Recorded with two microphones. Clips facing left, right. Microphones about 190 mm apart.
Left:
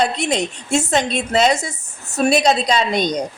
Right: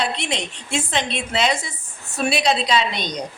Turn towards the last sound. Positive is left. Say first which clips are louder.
# left 4 dB
turn(degrees=45)  # may be behind; listen again after turning